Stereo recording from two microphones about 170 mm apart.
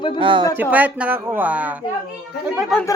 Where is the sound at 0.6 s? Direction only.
10° right (ahead or behind).